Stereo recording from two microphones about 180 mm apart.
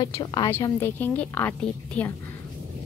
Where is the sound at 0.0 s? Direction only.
25° left (ahead or behind).